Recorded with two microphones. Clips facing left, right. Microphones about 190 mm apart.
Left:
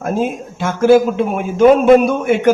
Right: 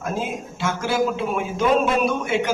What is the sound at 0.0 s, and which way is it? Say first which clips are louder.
A man's voice: left 8 dB; 55° left (ahead or behind).